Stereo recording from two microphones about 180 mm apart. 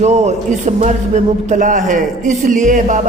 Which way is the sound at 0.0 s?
40° right (ahead or behind).